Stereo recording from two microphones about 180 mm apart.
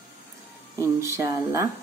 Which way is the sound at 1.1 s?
15° right (ahead or behind).